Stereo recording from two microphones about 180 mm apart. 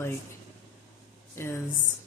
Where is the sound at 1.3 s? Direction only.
15° left (ahead or behind).